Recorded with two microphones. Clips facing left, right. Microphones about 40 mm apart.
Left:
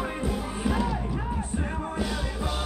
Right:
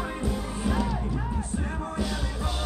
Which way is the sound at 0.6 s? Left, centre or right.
Centre.